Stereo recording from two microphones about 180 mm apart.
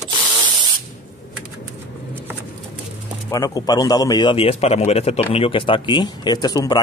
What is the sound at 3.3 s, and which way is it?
Speech, 20° left (ahead or behind).